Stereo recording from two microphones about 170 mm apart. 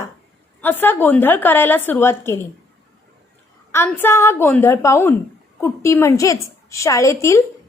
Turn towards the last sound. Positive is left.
turn(degrees=20)  # may be behind; listen again after turning